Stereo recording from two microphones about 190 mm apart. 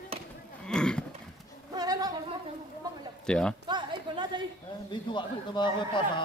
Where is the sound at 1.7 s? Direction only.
20° right (ahead or behind).